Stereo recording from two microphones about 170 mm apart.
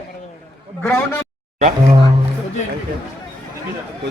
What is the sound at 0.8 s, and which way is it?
Speech, 15° left (ahead or behind).